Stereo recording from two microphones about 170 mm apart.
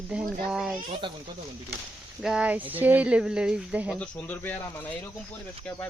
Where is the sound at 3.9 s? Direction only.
5° left (ahead or behind).